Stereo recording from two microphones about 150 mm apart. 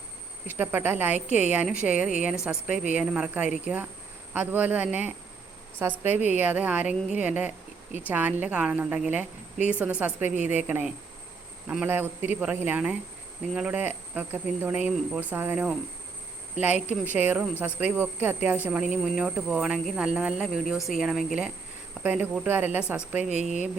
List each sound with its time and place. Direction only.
0.4 s speech: 15° right (ahead or behind)
23.3 s speech: 50° right (ahead or behind)